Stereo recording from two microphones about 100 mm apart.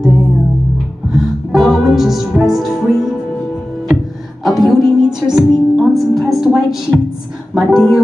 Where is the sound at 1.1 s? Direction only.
Centre (ahead or behind).